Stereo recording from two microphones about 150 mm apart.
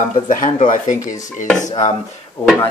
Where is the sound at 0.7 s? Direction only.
55° left (ahead or behind).